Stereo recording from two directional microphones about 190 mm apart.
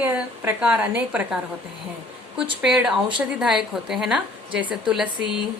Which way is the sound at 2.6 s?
5° right (ahead or behind).